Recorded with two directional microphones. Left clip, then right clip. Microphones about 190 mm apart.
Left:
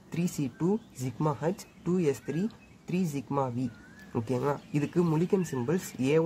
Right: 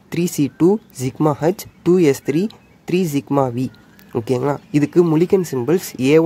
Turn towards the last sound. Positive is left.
turn(degrees=-45)  # may be behind; listen again after turning